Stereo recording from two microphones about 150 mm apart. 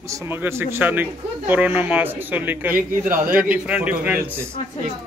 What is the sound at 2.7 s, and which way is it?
Speech, 65° right (ahead or behind).